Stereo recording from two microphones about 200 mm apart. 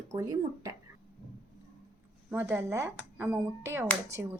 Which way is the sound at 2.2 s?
10° right (ahead or behind).